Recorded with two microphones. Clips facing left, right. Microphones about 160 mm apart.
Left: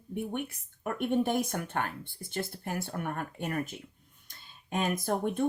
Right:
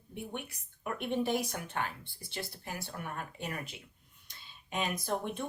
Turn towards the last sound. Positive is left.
turn(degrees=50)  # may be behind; listen again after turning